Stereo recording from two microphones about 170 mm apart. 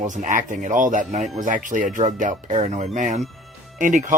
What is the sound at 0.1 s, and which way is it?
Speech, 50° right (ahead or behind).